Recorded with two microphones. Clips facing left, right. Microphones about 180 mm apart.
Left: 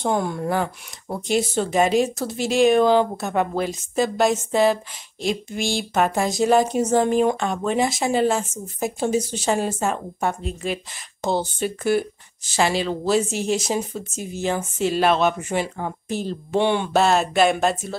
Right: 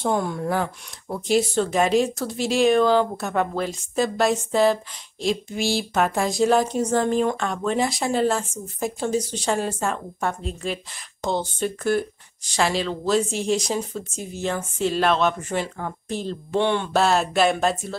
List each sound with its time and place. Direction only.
0.0 s speech: centre (ahead or behind)
16.9 s speech: centre (ahead or behind)